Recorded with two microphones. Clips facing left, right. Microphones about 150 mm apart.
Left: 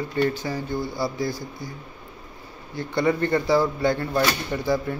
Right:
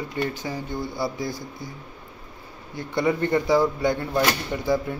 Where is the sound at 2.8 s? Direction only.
15° right (ahead or behind).